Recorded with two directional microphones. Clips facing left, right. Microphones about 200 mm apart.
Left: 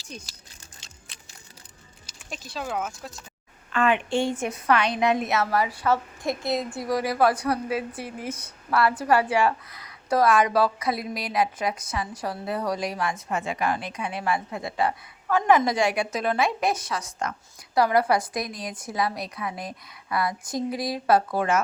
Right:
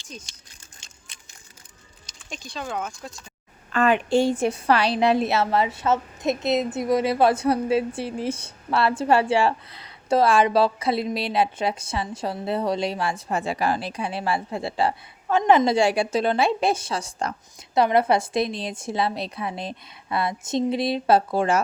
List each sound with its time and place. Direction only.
2.0 s speech: 5° left (ahead or behind)
3.7 s a woman's voice: 40° right (ahead or behind)